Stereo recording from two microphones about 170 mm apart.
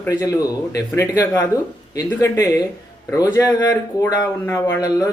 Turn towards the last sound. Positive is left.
turn(degrees=20)  # may be behind; listen again after turning